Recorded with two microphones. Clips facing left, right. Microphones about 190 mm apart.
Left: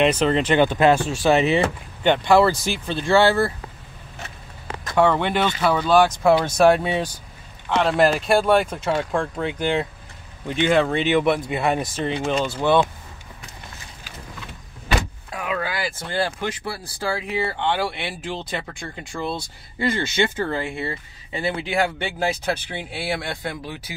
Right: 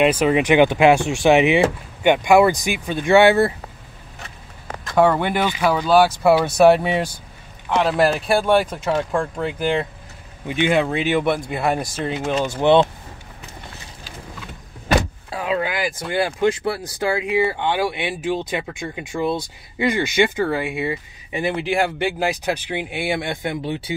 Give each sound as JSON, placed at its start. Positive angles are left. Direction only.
{"t": 0.0, "sound": "speech", "side_deg": -10}
{"t": 4.9, "sound": "speech", "side_deg": -10}
{"t": 12.4, "sound": "speech", "side_deg": -20}
{"t": 15.3, "sound": "a sound", "side_deg": -25}
{"t": 17.0, "sound": "speech", "side_deg": -20}